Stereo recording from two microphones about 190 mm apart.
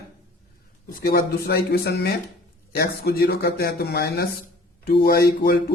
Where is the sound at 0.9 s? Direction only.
50° left (ahead or behind).